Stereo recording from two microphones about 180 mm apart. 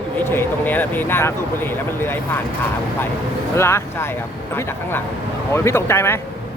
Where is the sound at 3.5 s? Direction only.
15° left (ahead or behind).